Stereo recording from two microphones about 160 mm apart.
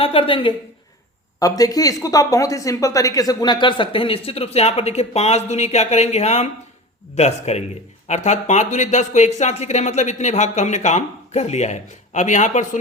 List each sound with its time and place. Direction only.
0.0 s speech: 35° left (ahead or behind)
1.4 s speech: 20° left (ahead or behind); by 12.6 s 50° left (ahead or behind)